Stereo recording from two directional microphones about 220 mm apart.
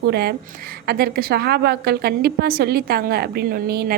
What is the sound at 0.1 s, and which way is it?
A woman's voice, 45° right (ahead or behind).